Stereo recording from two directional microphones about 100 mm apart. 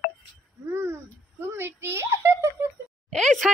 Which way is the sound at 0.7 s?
25° right (ahead or behind).